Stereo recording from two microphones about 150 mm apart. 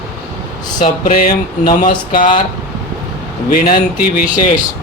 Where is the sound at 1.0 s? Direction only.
70° left (ahead or behind).